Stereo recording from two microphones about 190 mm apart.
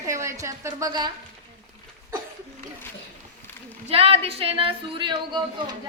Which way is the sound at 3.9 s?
30° right (ahead or behind).